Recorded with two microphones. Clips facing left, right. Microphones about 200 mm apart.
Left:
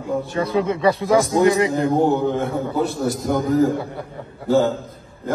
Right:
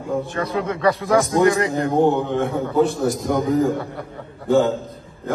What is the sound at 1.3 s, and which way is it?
Speech, 15° left (ahead or behind).